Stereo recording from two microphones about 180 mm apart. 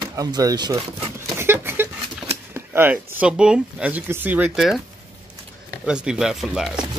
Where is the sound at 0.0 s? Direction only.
20° right (ahead or behind).